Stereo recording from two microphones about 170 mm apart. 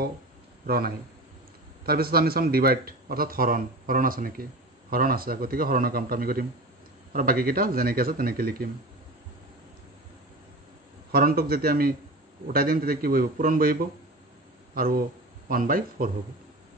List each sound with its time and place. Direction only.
0.7 s a man's voice: 65° right (ahead or behind)
11.1 s a man's voice: 65° right (ahead or behind)